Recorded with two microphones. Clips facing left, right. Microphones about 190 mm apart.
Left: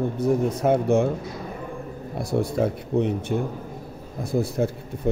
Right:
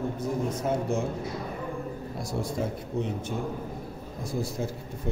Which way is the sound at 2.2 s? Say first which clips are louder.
Left 9 dB; 60° left (ahead or behind).